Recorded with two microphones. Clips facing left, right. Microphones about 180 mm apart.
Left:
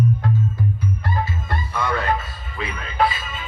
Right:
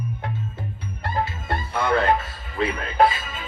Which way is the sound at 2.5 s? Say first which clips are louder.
Right 4 dB; 45° right (ahead or behind).